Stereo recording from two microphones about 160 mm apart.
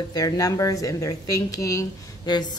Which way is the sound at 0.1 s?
20° left (ahead or behind).